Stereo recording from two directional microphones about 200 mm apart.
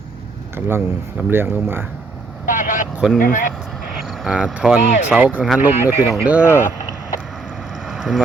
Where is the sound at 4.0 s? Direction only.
Centre (ahead or behind).